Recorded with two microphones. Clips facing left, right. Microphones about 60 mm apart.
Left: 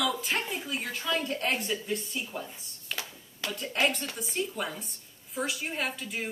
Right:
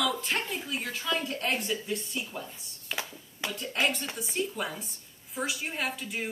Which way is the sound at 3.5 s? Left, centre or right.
Centre.